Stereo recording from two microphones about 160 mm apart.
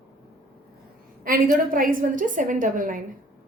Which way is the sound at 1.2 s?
60° right (ahead or behind).